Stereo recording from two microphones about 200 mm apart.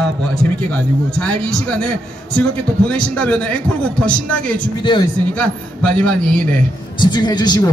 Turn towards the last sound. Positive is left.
turn(degrees=20)  # may be behind; listen again after turning